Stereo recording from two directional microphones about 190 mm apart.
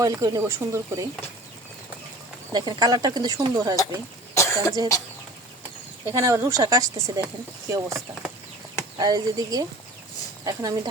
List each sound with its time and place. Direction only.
0.0 s speech: 20° right (ahead or behind)
2.5 s speech: 20° right (ahead or behind)
4.4 s cough: 15° left (ahead or behind)
6.1 s speech: 15° right (ahead or behind)